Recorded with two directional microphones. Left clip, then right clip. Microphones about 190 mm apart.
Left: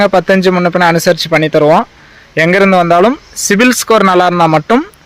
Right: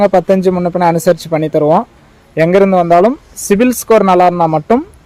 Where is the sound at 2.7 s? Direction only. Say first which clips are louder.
Left 1 dB; 20° left (ahead or behind).